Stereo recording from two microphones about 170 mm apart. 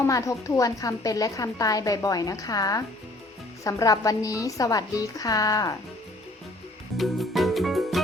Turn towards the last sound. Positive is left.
turn(degrees=0)  # may be behind; listen again after turning